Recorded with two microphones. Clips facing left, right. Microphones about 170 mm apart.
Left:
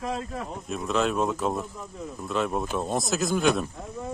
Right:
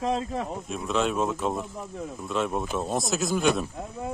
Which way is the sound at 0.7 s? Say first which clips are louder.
Left 2 dB; centre (ahead or behind).